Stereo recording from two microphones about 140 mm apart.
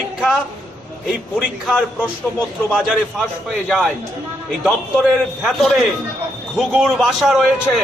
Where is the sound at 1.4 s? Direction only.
5° right (ahead or behind).